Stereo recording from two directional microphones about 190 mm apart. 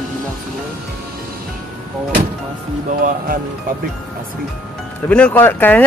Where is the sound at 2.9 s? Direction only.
50° right (ahead or behind).